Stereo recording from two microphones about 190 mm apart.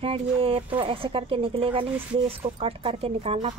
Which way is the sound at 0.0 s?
30° right (ahead or behind).